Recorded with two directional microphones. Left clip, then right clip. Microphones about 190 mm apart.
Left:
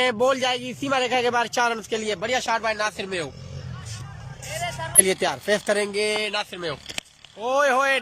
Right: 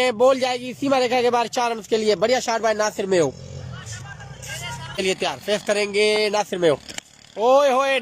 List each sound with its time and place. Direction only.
0.0 s speech: 20° right (ahead or behind)
4.9 s speech: 5° right (ahead or behind)
6.3 s speech: 35° right (ahead or behind)
7.3 s speech: 20° right (ahead or behind)